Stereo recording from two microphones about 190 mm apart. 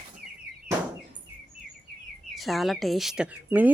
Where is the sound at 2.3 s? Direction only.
Centre (ahead or behind).